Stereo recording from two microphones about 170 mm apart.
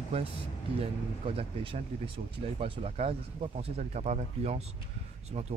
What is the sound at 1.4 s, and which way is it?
Speech, 35° right (ahead or behind).